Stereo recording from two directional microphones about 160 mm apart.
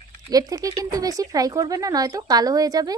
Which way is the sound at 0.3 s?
25° right (ahead or behind).